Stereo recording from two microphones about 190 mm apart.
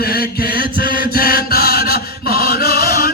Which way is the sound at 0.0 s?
55° left (ahead or behind).